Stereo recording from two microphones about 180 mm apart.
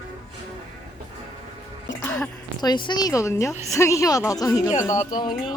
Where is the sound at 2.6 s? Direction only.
25° left (ahead or behind).